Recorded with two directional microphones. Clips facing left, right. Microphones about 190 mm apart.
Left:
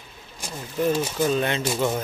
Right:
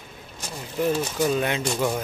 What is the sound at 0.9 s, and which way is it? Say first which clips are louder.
Speech: even; 10° left (ahead or behind).